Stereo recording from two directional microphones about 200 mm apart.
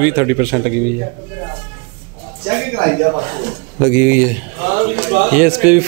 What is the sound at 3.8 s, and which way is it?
Speech, 15° right (ahead or behind).